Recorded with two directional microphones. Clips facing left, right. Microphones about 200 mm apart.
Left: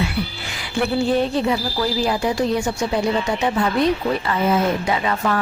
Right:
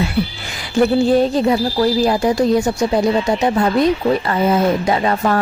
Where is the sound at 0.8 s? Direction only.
40° right (ahead or behind).